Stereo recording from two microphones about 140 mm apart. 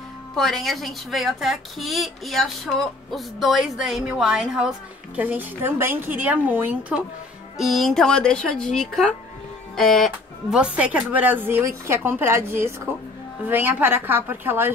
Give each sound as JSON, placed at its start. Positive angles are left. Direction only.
{"t": 0.4, "sound": "speech", "side_deg": 0}
{"t": 7.5, "sound": "speech", "side_deg": 0}
{"t": 10.6, "sound": "speech", "side_deg": -10}